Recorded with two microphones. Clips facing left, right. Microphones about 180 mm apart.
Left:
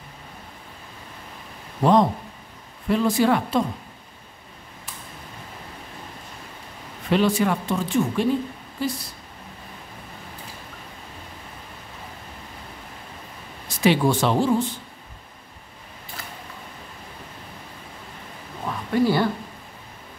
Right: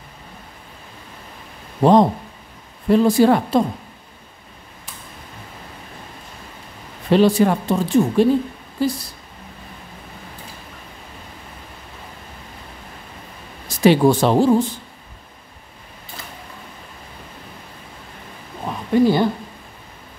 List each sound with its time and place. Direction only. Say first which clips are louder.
1.8 s speech: right 5 dB; 30° right (ahead or behind)
7.1 s speech: right 6 dB; 35° right (ahead or behind)
13.7 s speech: right 6 dB; 40° right (ahead or behind)
18.7 s a sound: right 5 dB; 20° right (ahead or behind)